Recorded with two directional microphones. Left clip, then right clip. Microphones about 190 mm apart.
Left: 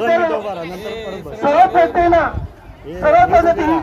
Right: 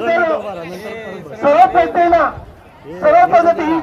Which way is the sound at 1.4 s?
Centre (ahead or behind).